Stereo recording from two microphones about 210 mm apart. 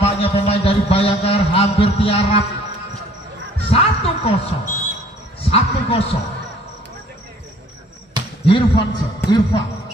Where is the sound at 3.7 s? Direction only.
30° left (ahead or behind).